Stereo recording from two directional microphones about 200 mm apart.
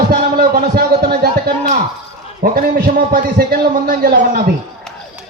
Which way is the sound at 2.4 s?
50° right (ahead or behind).